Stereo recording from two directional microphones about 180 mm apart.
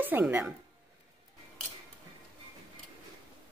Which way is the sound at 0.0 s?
10° right (ahead or behind).